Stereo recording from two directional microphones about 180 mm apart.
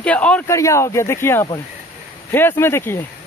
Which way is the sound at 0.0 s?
5° left (ahead or behind).